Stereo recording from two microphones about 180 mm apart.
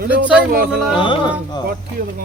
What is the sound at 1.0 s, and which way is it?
Speech, 25° left (ahead or behind).